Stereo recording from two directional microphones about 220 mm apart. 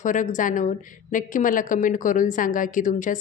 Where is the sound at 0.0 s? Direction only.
35° left (ahead or behind).